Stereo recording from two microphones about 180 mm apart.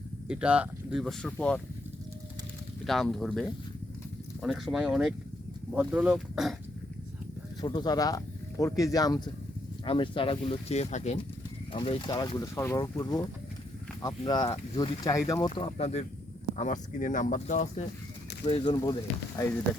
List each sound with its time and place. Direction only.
0.3 s speech: 5° right (ahead or behind)
2.8 s speech: centre (ahead or behind)
7.6 s speech: 25° left (ahead or behind)
17.0 s speech: 45° left (ahead or behind)
18.4 s speech: 30° left (ahead or behind)